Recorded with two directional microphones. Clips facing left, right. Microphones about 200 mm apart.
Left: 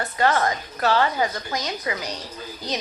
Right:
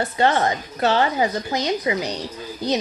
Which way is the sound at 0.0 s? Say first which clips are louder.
Right 2 dB; 25° right (ahead or behind).